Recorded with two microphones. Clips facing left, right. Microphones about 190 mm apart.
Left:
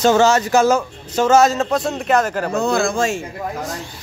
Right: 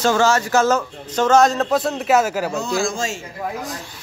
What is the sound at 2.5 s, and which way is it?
Speech, 60° left (ahead or behind).